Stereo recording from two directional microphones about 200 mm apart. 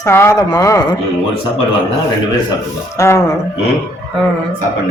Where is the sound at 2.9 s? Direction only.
15° left (ahead or behind).